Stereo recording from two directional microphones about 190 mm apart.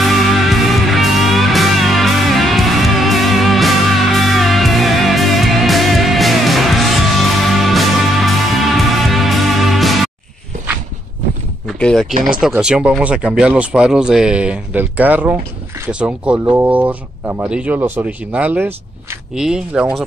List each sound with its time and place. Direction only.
0.0 s music: centre (ahead or behind)
11.6 s a sound: centre (ahead or behind)
12.1 s speech: 45° right (ahead or behind)
12.4 s speech: 5° right (ahead or behind)